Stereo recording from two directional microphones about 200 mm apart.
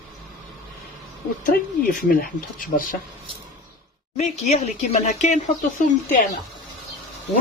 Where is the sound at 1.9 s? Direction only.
45° left (ahead or behind).